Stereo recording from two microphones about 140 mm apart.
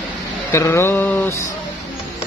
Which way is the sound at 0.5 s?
20° left (ahead or behind).